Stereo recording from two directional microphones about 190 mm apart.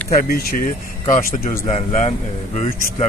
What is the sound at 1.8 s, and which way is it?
Speech, 35° left (ahead or behind).